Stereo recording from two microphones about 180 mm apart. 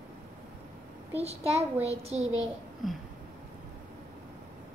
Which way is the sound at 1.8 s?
35° right (ahead or behind).